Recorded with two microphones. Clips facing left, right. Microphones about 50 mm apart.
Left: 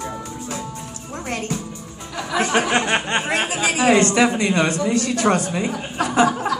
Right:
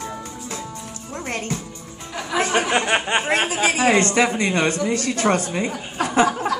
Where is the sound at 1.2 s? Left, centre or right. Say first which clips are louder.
Left 1 dB; right.